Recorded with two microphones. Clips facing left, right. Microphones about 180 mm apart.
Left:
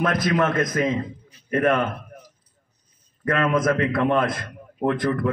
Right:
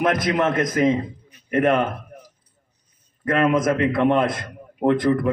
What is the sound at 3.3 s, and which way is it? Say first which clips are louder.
A man's voice: right 2 dB; 25° right (ahead or behind).